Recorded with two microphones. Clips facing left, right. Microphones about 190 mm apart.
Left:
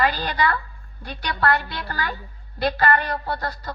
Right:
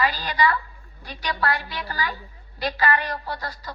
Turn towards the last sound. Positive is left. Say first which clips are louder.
# left 4 dB
turn(degrees=60)  # may be behind; listen again after turning